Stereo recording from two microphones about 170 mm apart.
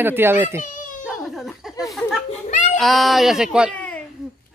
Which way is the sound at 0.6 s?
50° left (ahead or behind).